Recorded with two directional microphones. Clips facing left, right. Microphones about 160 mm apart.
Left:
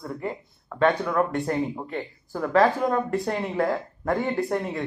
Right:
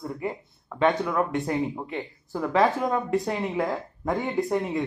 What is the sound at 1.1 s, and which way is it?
A man's voice, 15° right (ahead or behind).